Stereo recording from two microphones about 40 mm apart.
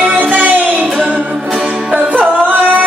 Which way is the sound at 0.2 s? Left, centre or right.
Right.